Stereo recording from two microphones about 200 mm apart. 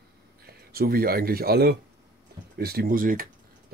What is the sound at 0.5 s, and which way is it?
Speech, 50° right (ahead or behind).